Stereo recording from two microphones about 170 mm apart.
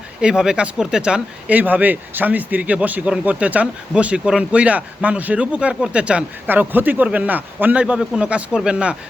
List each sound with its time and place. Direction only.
0.2 s speech: 5° right (ahead or behind)